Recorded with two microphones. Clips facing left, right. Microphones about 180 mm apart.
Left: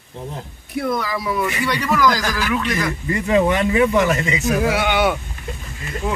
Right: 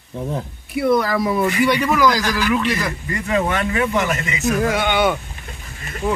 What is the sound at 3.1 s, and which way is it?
Speech, 20° left (ahead or behind).